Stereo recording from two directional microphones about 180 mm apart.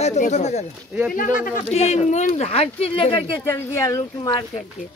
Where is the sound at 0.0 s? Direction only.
40° left (ahead or behind).